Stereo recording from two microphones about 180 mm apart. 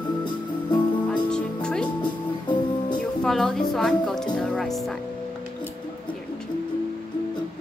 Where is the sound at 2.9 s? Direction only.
5° left (ahead or behind).